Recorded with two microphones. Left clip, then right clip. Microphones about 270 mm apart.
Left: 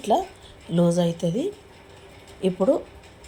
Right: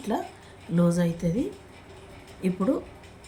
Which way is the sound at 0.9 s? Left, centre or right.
Centre.